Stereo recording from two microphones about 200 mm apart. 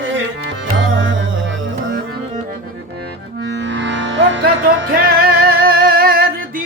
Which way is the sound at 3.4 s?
60° right (ahead or behind).